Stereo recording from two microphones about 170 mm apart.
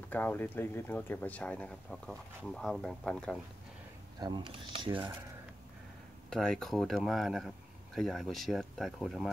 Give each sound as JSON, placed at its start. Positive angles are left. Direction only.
{"t": 0.1, "sound": "speech", "side_deg": 10}
{"t": 4.2, "sound": "speech", "side_deg": -30}
{"t": 6.3, "sound": "speech", "side_deg": 5}